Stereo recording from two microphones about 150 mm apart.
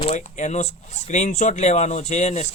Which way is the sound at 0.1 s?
50° left (ahead or behind).